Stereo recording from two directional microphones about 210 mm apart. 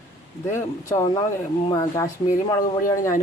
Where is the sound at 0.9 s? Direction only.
15° left (ahead or behind).